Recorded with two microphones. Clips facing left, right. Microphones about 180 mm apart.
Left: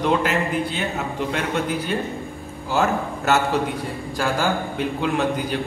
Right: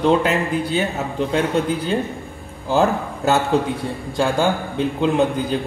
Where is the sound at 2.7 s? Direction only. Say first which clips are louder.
Right 3 dB; 30° right (ahead or behind).